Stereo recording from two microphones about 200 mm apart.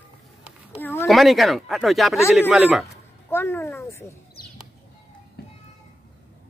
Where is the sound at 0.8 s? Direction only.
10° left (ahead or behind).